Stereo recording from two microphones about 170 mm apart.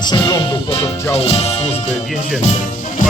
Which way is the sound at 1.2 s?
35° left (ahead or behind).